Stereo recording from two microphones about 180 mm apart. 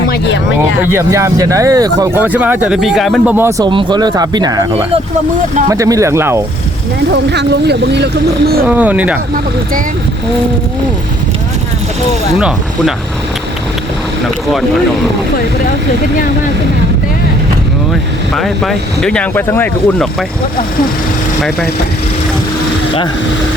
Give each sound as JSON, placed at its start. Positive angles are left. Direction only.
{"t": 0.9, "sound": "speech", "side_deg": -15}
{"t": 2.2, "sound": "speech", "side_deg": -10}
{"t": 3.3, "sound": "speech", "side_deg": -15}
{"t": 3.7, "sound": "speech", "side_deg": -25}
{"t": 5.6, "sound": "speech", "side_deg": -20}
{"t": 7.1, "sound": "speech", "side_deg": -70}
{"t": 8.6, "sound": "speech", "side_deg": -10}
{"t": 12.4, "sound": "speech", "side_deg": -5}
{"t": 18.3, "sound": "speech", "side_deg": 0}